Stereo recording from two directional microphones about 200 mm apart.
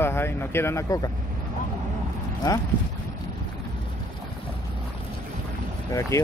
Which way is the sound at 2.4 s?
20° left (ahead or behind).